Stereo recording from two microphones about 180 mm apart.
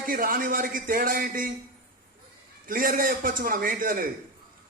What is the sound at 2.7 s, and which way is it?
A woman's voice, 50° right (ahead or behind).